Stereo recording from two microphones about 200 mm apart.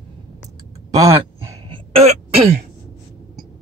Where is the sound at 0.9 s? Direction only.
15° right (ahead or behind).